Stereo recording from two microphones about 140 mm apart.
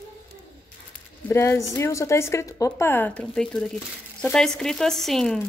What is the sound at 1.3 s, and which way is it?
Speech, 20° left (ahead or behind).